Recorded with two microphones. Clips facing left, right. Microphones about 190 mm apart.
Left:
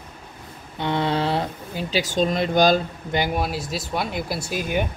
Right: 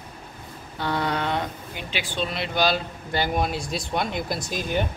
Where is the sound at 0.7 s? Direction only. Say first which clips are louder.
Left 3 dB; 25° left (ahead or behind); by 2.8 s 45° left (ahead or behind).